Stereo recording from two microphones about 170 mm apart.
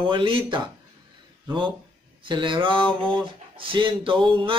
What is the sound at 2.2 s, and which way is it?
A man's voice, 30° right (ahead or behind).